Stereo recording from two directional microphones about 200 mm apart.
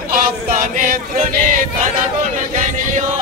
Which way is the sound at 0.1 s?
40° right (ahead or behind).